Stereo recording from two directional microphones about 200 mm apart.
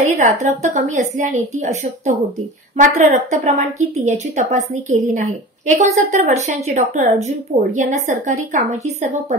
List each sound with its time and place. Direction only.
0.0 s a woman's voice: 35° right (ahead or behind)